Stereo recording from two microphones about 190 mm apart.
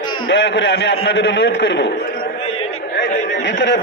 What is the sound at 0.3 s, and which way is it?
A man's voice, 70° left (ahead or behind).